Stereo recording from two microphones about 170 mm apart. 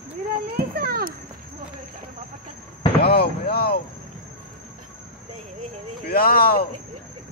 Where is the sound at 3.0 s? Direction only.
65° left (ahead or behind).